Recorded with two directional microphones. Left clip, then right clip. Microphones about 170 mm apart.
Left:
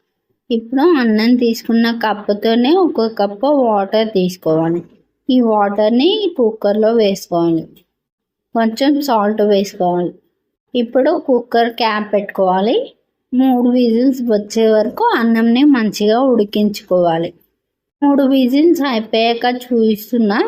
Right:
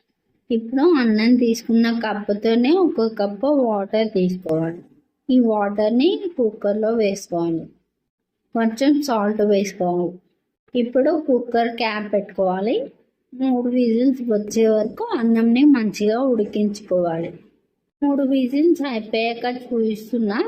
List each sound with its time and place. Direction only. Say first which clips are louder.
0.5 s a woman's voice: left 4 dB; 25° left (ahead or behind)
9.0 s a woman's voice: left 6 dB; 25° left (ahead or behind)